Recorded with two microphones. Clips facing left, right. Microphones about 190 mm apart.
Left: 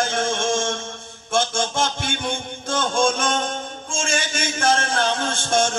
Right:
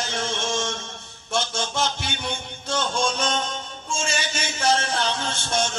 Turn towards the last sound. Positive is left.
turn(degrees=50)  # may be behind; listen again after turning